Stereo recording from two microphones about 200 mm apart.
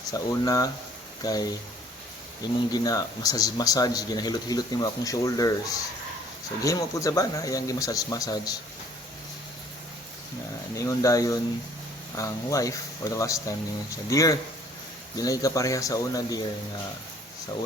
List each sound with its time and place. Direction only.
0.1 s speech: 15° left (ahead or behind)
10.8 s speech: 15° left (ahead or behind)